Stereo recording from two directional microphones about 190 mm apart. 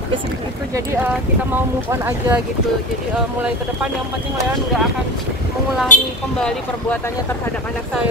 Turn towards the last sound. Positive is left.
turn(degrees=5)  # may be behind; listen again after turning